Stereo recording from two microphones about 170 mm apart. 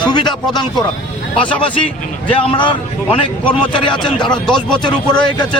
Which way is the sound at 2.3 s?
30° left (ahead or behind).